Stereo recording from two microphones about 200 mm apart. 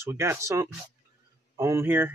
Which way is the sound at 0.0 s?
15° right (ahead or behind).